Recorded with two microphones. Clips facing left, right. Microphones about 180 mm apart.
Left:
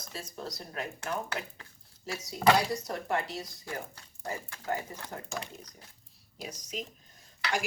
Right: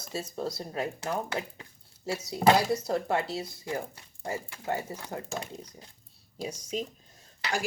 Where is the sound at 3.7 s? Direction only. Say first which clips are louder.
Right 6 dB; 15° right (ahead or behind).